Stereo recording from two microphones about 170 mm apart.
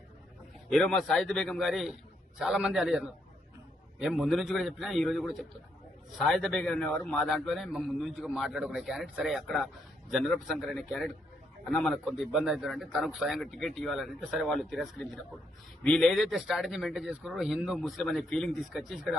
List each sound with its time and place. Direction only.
0.7 s a man's voice: 5° left (ahead or behind)